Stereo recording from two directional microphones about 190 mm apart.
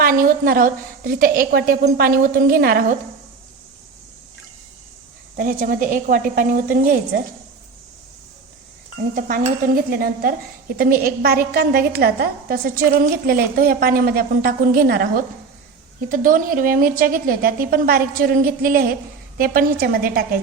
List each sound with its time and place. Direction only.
0.0 s a woman's voice: 45° right (ahead or behind)
5.4 s a woman's voice: 45° right (ahead or behind)
9.1 s a woman's voice: 45° right (ahead or behind)